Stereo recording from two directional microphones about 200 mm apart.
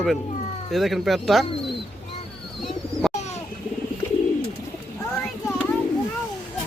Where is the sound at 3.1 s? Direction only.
35° left (ahead or behind).